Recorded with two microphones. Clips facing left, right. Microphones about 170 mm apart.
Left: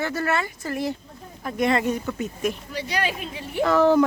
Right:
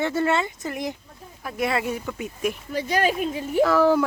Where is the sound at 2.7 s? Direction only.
45° right (ahead or behind).